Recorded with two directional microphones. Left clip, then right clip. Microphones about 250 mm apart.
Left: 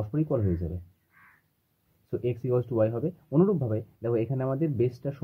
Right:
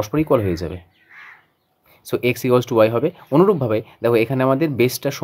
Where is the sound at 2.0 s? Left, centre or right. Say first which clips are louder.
Right 11 dB; right.